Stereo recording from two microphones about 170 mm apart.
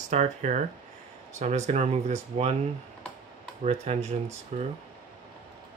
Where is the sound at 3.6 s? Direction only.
40° right (ahead or behind).